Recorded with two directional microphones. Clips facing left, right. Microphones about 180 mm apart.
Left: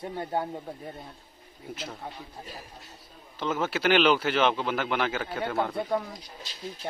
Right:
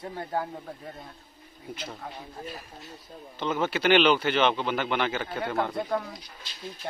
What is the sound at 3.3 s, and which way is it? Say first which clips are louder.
Speech: right 1 dB; 5° left (ahead or behind).